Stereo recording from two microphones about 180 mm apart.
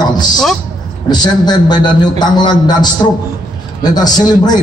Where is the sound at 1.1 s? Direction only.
25° left (ahead or behind).